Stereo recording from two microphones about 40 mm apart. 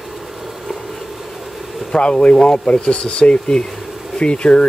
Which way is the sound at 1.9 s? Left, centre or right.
Left.